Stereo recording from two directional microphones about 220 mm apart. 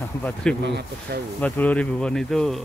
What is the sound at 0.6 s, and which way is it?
Speech, 50° right (ahead or behind).